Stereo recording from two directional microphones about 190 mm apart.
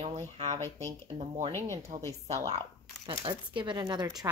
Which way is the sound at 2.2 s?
35° right (ahead or behind).